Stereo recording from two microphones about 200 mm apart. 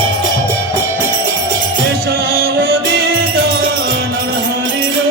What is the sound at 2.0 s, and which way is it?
Music, 50° right (ahead or behind).